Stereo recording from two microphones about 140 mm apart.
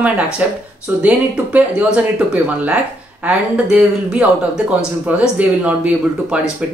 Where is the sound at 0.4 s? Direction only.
10° right (ahead or behind).